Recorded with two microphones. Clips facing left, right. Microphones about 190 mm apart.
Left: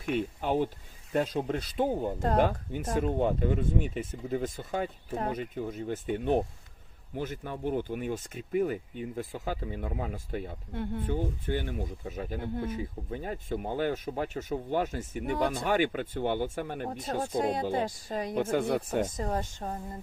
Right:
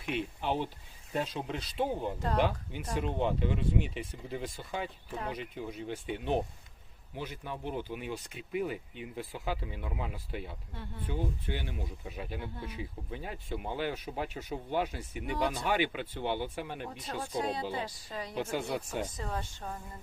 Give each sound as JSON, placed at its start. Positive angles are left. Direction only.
{"t": 0.0, "sound": "speech", "side_deg": 45}
{"t": 1.1, "sound": "speech", "side_deg": 60}